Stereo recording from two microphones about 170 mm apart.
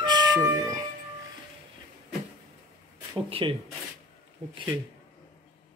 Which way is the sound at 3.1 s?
30° right (ahead or behind).